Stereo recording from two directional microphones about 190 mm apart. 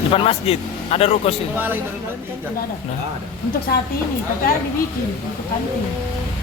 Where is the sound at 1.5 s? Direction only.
10° right (ahead or behind).